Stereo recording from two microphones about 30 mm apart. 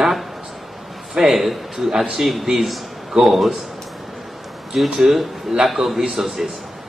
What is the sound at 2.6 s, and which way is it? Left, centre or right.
Speech, centre.